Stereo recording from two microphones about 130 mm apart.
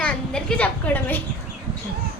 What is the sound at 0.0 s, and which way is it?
A woman's voice, 5° left (ahead or behind).